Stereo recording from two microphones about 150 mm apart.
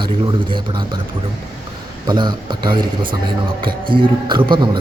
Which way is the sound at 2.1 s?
30° right (ahead or behind).